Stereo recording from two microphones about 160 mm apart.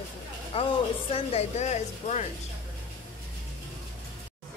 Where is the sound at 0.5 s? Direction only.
35° left (ahead or behind).